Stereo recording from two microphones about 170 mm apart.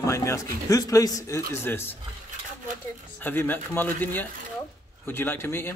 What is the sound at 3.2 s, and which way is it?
A man's voice, 10° left (ahead or behind).